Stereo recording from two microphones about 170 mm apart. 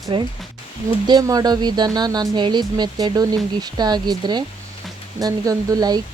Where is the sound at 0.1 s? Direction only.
30° right (ahead or behind).